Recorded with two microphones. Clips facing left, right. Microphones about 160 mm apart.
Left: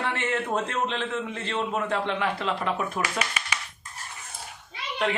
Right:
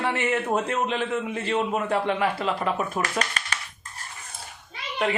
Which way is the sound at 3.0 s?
10° left (ahead or behind).